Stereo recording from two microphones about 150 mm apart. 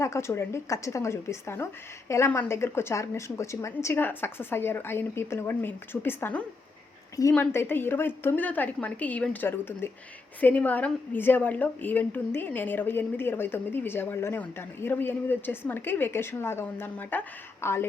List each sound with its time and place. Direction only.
0.0 s a woman's voice: 20° left (ahead or behind)